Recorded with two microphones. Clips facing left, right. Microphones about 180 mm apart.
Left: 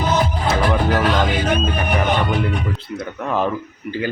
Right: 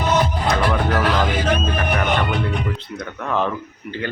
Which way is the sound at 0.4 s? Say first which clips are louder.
Left 1 dB; 10° left (ahead or behind).